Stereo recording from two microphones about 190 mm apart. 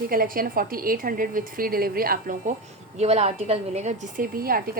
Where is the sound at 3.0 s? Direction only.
35° right (ahead or behind); by 4.8 s 50° right (ahead or behind).